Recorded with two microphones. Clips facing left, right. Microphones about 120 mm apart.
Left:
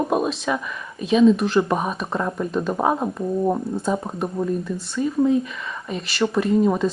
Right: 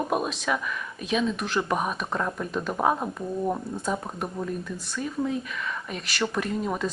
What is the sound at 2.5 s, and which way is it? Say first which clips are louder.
Speech: left 6 dB; centre (ahead or behind).